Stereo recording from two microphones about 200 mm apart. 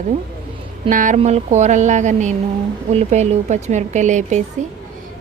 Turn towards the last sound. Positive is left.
turn(degrees=-35)  # may be behind; listen again after turning